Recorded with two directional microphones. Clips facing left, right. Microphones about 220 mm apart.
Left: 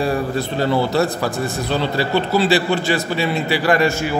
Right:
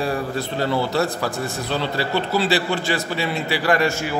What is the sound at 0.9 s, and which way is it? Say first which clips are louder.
A man's voice: left 3 dB; 15° left (ahead or behind).